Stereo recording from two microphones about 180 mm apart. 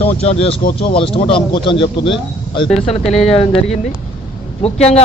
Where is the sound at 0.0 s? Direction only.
35° left (ahead or behind).